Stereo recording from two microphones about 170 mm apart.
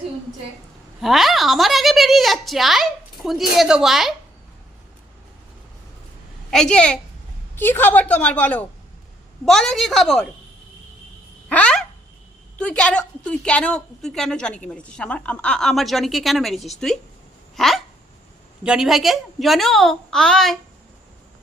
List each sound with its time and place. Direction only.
1.0 s a woman's voice: centre (ahead or behind)
6.5 s a woman's voice: 5° left (ahead or behind)
11.4 s a sound: 5° left (ahead or behind)
12.5 s a woman's voice: 5° left (ahead or behind)